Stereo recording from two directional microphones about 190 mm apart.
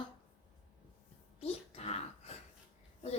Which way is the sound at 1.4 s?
30° left (ahead or behind).